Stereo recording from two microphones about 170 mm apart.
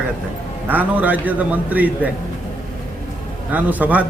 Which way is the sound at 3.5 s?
10° right (ahead or behind).